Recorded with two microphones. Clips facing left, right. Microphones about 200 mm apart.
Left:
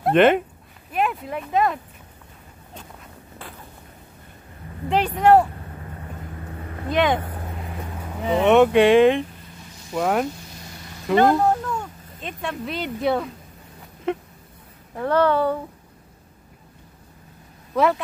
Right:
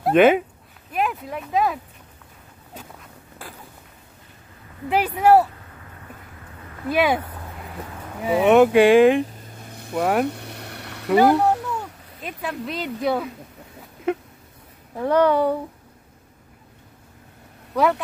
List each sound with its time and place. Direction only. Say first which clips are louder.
0.0 s speech: right 1 dB; 5° right (ahead or behind)
4.8 s speech: even; 5° right (ahead or behind)
6.9 s speech: even; 5° right (ahead or behind)
8.2 s speech: right 1 dB; 5° right (ahead or behind)
9.7 s vehicle: right 5 dB; 60° right (ahead or behind)
9.9 s speech: right 1 dB; 5° right (ahead or behind)
10.2 s a sound: right 4 dB; 65° right (ahead or behind)
11.1 s speech: right 1 dB; 5° right (ahead or behind)
11.3 s speech: even; 70° right (ahead or behind)
11.6 s speech: left 1 dB; 5° right (ahead or behind)
14.1 s honk: right 1 dB; 5° right (ahead or behind)
15.0 s speech: right 1 dB; 15° right (ahead or behind)
17.7 s speech: even; centre (ahead or behind)